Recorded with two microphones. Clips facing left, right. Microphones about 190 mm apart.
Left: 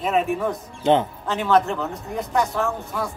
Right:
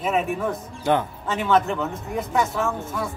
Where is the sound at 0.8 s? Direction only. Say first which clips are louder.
Left 3 dB; 20° left (ahead or behind).